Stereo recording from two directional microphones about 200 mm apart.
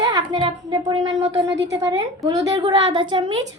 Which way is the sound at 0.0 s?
25° right (ahead or behind).